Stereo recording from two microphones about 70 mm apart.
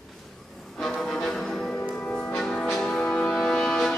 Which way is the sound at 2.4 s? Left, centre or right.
Centre.